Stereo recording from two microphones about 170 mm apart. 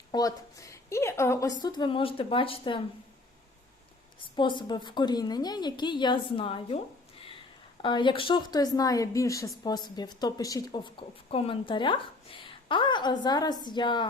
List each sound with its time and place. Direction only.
0.1 s a woman's voice: 20° left (ahead or behind)
4.4 s a woman's voice: 25° left (ahead or behind)
7.8 s a woman's voice: 30° left (ahead or behind)